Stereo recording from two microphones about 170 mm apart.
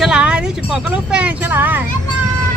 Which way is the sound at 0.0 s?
5° right (ahead or behind).